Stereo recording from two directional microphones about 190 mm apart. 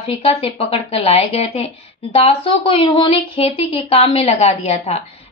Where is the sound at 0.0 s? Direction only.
30° left (ahead or behind).